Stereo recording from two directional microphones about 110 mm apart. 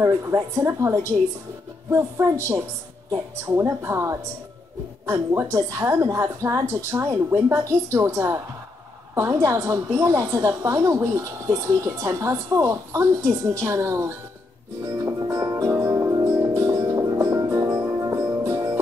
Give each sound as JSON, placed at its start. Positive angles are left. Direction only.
{"t": 0.0, "sound": "a woman's voice", "side_deg": -25}
{"t": 14.9, "sound": "music", "side_deg": -25}